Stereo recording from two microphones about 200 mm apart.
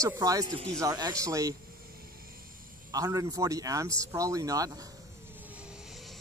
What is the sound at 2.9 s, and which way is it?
Speech, 15° right (ahead or behind).